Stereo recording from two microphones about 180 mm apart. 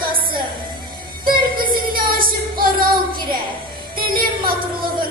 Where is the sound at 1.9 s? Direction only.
50° right (ahead or behind).